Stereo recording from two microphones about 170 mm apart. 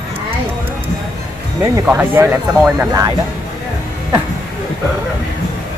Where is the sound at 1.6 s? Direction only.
10° right (ahead or behind).